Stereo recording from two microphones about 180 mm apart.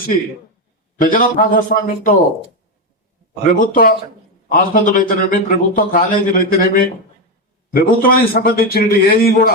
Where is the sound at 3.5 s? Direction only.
50° left (ahead or behind).